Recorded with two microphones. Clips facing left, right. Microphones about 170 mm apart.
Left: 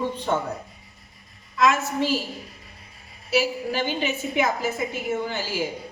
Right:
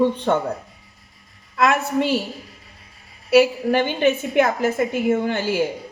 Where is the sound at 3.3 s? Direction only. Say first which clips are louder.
Right 8 dB; 60° right (ahead or behind).